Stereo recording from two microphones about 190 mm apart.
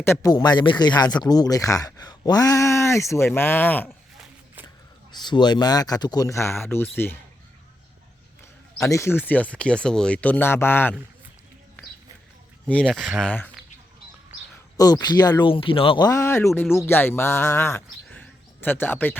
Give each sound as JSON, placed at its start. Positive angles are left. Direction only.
{"t": 0.0, "sound": "speech", "side_deg": 15}
{"t": 5.2, "sound": "speech", "side_deg": 25}
{"t": 8.8, "sound": "speech", "side_deg": 15}
{"t": 12.6, "sound": "speech", "side_deg": 5}
{"t": 14.8, "sound": "speech", "side_deg": 20}